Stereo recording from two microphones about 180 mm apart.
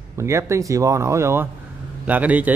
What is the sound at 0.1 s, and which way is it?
Speech, 15° right (ahead or behind).